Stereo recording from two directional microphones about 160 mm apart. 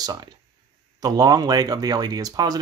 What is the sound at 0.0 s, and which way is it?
Speech, 25° right (ahead or behind).